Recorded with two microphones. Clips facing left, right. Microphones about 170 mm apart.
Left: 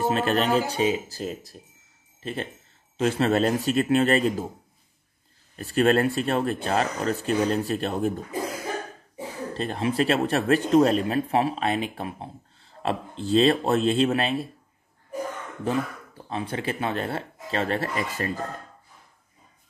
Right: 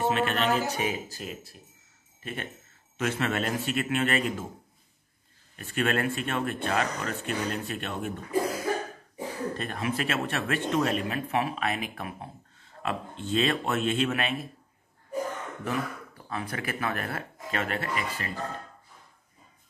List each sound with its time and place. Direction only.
0.0 s speech: 35° left (ahead or behind)
5.6 s speech: 35° left (ahead or behind)
9.1 s speech: 30° left (ahead or behind)
16.3 s speech: 25° left (ahead or behind)